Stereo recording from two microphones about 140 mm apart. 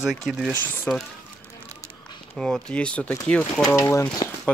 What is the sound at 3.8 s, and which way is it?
Speech, 20° left (ahead or behind).